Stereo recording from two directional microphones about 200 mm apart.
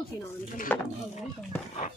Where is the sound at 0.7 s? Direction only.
10° left (ahead or behind).